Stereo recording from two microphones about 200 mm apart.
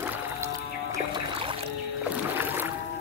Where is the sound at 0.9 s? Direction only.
25° right (ahead or behind).